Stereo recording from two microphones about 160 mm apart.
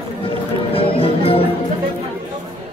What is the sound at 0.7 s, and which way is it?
Music, 35° left (ahead or behind).